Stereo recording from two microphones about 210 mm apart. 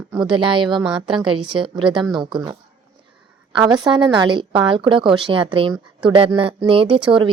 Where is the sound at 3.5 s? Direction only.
20° right (ahead or behind).